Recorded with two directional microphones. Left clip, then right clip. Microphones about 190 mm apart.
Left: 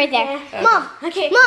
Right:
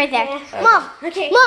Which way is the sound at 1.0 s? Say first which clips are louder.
Left 1 dB; 60° left (ahead or behind).